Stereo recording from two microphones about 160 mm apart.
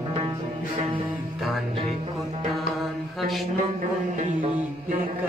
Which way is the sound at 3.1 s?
Centre (ahead or behind).